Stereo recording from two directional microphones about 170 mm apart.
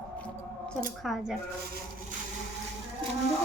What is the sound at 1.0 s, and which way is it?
Speech, centre (ahead or behind).